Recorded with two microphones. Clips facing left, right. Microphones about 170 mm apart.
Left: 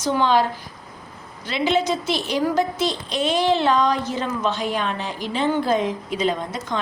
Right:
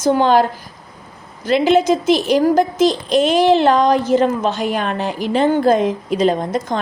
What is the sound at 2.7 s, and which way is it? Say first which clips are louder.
Speech: right 9 dB; 90° right.